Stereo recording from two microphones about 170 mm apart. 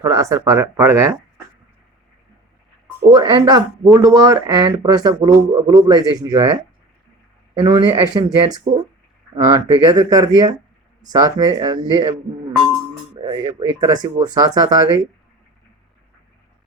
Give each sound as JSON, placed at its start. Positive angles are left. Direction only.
{"t": 0.0, "sound": "speech", "side_deg": -20}
{"t": 3.1, "sound": "speech", "side_deg": -25}
{"t": 7.6, "sound": "speech", "side_deg": -25}
{"t": 13.2, "sound": "speech", "side_deg": -30}